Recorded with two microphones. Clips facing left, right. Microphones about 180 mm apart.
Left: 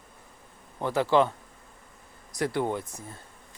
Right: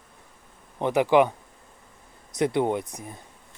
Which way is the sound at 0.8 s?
20° right (ahead or behind).